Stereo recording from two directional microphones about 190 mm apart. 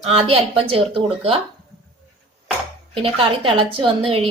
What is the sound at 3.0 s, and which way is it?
A woman's voice, 30° right (ahead or behind).